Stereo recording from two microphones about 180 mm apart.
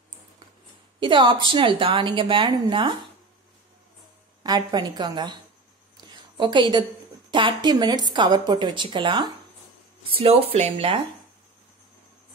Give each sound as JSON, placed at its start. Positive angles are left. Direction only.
{"t": 0.9, "sound": "a woman's voice", "side_deg": -25}
{"t": 4.4, "sound": "a woman's voice", "side_deg": -25}
{"t": 6.0, "sound": "a sound", "side_deg": -25}
{"t": 7.2, "sound": "a woman's voice", "side_deg": -25}